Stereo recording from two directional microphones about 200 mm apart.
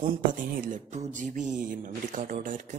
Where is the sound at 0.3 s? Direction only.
40° right (ahead or behind).